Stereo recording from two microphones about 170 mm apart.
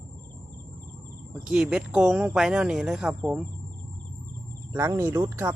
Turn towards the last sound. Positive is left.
turn(degrees=-15)  # may be behind; listen again after turning